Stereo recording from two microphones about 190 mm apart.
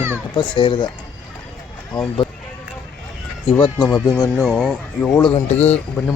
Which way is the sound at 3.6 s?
25° left (ahead or behind).